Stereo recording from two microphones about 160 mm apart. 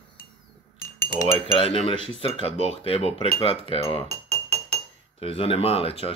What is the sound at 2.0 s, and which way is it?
Speech, 40° right (ahead or behind).